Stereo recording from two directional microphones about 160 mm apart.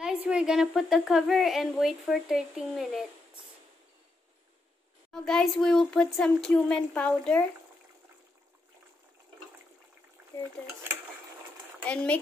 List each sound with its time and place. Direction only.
0.0 s a woman's voice: 5° right (ahead or behind)
5.1 s a woman's voice: 5° left (ahead or behind)
11.8 s speech: 10° left (ahead or behind)